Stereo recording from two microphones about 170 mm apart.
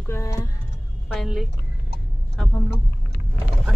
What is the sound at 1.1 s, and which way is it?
Speech, centre (ahead or behind).